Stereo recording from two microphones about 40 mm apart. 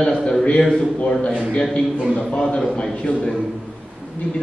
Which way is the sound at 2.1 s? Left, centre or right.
Left.